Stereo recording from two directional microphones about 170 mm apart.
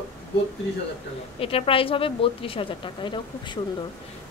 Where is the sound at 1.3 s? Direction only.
35° left (ahead or behind).